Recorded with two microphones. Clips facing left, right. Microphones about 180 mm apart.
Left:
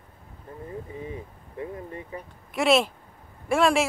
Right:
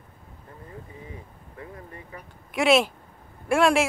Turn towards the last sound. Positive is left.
turn(degrees=0)  # may be behind; listen again after turning